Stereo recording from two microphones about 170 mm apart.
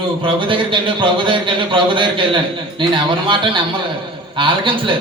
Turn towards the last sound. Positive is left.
turn(degrees=-30)  # may be behind; listen again after turning